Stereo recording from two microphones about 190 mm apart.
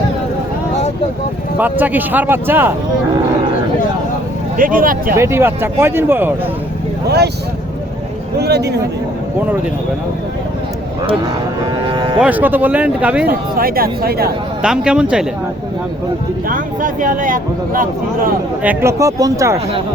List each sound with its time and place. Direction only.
1.5 s speech: 10° right (ahead or behind)
4.5 s speech: 45° right (ahead or behind)
5.1 s speech: 15° right (ahead or behind)
8.4 s speech: 60° right (ahead or behind)
11.9 s speech: 25° right (ahead or behind)
12.2 s speech: 10° right (ahead or behind)
13.2 s speech: 50° right (ahead or behind)
14.6 s speech: 5° right (ahead or behind)
16.5 s speech: 45° right (ahead or behind)
18.6 s speech: 10° right (ahead or behind)